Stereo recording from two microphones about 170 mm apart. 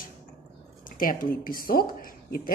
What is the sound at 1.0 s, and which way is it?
Speech, 55° left (ahead or behind).